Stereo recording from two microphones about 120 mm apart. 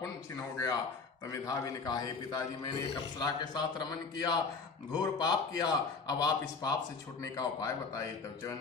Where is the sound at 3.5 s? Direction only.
40° left (ahead or behind).